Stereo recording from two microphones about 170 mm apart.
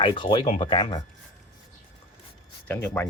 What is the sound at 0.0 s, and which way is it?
Speech, 30° left (ahead or behind).